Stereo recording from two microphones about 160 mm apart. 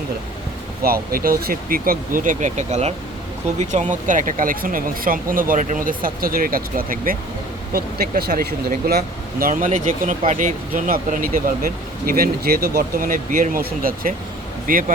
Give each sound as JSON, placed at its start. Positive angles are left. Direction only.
{"t": 0.8, "sound": "speech", "side_deg": -70}